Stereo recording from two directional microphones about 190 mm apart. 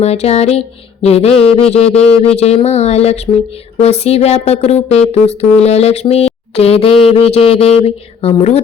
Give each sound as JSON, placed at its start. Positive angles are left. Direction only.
{"t": 0.0, "sound": "music", "side_deg": 35}